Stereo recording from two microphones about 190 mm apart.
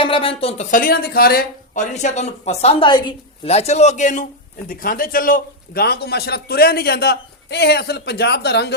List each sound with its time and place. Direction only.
0.0 s a man's voice: 30° left (ahead or behind); by 8.7 s 60° left (ahead or behind)